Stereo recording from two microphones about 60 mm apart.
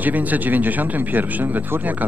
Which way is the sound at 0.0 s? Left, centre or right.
Right.